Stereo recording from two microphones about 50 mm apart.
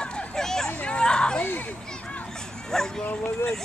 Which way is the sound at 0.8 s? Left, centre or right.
Centre.